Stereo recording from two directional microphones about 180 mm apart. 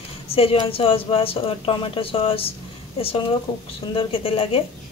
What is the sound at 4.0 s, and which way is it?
Speech, 30° left (ahead or behind).